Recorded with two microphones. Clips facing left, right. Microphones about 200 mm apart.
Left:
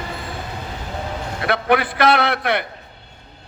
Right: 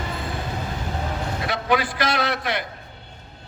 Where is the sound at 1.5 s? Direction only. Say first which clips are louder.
Left 5 dB; 60° left (ahead or behind).